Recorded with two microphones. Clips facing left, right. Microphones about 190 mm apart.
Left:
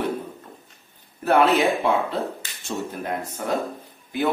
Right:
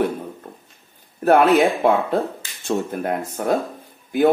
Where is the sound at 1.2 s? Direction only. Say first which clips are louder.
Right 4 dB; 50° right (ahead or behind).